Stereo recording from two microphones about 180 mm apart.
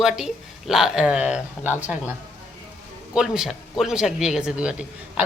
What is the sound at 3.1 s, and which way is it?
A man's voice, 5° right (ahead or behind).